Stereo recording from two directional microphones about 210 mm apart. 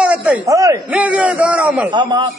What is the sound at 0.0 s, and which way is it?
A man's voice, 5° right (ahead or behind).